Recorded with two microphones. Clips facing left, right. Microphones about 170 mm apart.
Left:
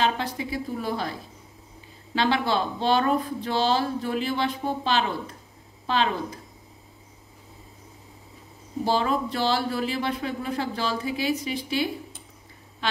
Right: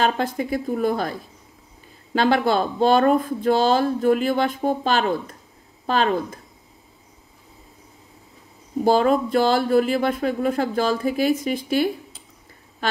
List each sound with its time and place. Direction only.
0.0 s speech: 50° right (ahead or behind)
2.1 s speech: 50° right (ahead or behind)
8.8 s speech: 50° right (ahead or behind)
12.8 s quack: 45° right (ahead or behind)